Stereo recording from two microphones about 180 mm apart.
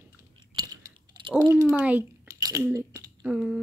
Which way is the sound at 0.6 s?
25° right (ahead or behind).